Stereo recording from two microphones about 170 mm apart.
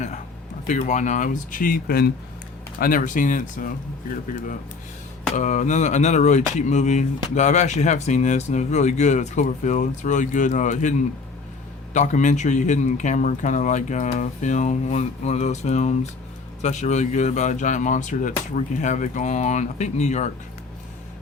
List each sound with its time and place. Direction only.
0.7 s speech: 45° left (ahead or behind)
5.3 s speech: 45° left (ahead or behind)
11.9 s speech: 45° left (ahead or behind)